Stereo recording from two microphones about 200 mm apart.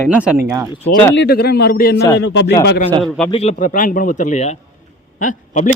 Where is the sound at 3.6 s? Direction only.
40° left (ahead or behind).